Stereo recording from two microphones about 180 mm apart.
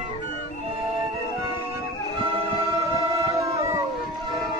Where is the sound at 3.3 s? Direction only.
15° right (ahead or behind).